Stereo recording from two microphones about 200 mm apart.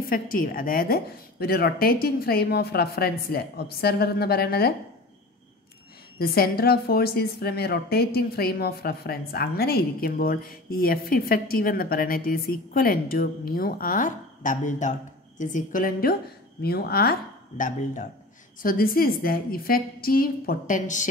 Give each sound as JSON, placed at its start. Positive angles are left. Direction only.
{"t": 0.0, "sound": "a woman's voice", "side_deg": 45}
{"t": 6.1, "sound": "a woman's voice", "side_deg": 50}